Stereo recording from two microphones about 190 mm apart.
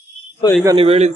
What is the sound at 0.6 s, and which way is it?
Speech, 30° right (ahead or behind).